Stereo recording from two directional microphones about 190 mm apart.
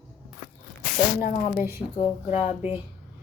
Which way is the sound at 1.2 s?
45° left (ahead or behind).